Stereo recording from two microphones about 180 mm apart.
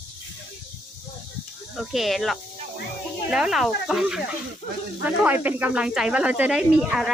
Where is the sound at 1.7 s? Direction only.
Centre (ahead or behind).